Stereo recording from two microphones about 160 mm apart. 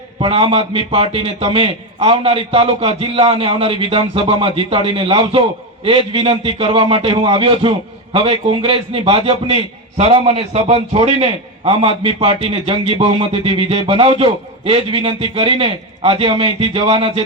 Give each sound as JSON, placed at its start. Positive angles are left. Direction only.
{"t": 0.2, "sound": "a man's voice", "side_deg": -35}